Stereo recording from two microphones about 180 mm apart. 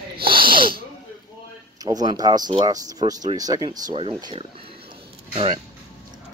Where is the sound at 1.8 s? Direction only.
20° right (ahead or behind).